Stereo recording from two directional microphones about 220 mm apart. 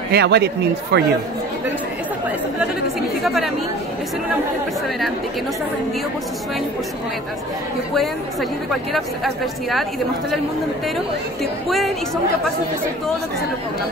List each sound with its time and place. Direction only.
0.1 s speech: 50° right (ahead or behind)
3.2 s speech: centre (ahead or behind)
7.9 s speech: centre (ahead or behind)